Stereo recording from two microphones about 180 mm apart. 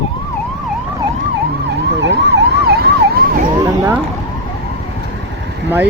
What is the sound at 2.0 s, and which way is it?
Ambulance, 75° right (ahead or behind).